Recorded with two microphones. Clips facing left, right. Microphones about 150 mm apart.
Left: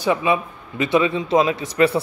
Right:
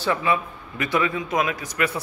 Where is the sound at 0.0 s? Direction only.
15° left (ahead or behind).